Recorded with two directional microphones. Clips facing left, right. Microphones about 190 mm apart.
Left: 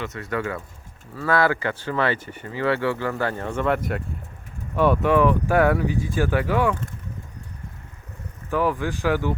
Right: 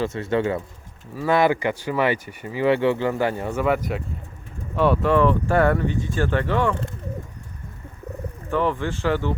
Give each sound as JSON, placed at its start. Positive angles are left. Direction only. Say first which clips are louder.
{"t": 0.0, "sound": "speech", "louder": "right 5 dB", "side_deg": -25}
{"t": 4.8, "sound": "speech", "louder": "even", "side_deg": 5}
{"t": 8.4, "sound": "speech", "louder": "even", "side_deg": 5}